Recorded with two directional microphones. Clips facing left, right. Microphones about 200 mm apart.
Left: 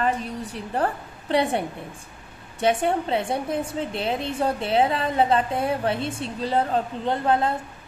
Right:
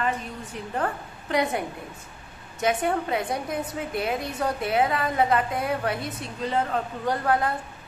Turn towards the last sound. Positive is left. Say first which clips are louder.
# left 2 dB
turn(degrees=25)  # may be behind; listen again after turning